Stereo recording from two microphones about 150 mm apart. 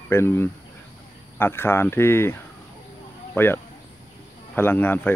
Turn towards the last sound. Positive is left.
turn(degrees=10)  # may be behind; listen again after turning